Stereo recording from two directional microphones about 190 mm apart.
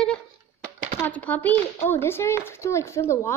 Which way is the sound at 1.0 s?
10° left (ahead or behind).